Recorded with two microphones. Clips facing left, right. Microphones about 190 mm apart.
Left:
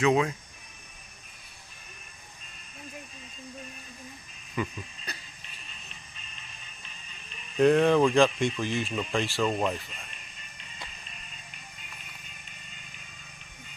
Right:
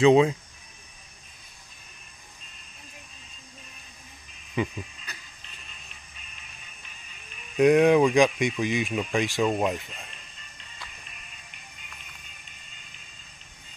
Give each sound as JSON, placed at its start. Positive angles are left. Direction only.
{"t": 0.0, "sound": "speech", "side_deg": -25}
{"t": 5.1, "sound": "music", "side_deg": 35}
{"t": 7.5, "sound": "speech", "side_deg": -10}
{"t": 10.1, "sound": "music", "side_deg": 15}